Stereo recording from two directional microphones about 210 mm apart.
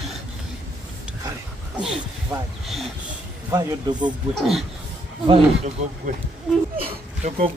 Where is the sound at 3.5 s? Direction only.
20° right (ahead or behind).